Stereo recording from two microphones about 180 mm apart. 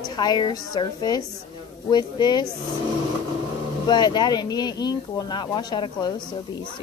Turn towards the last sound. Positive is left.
turn(degrees=25)  # may be behind; listen again after turning